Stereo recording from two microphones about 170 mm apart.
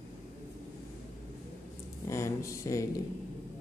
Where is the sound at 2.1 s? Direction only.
15° left (ahead or behind).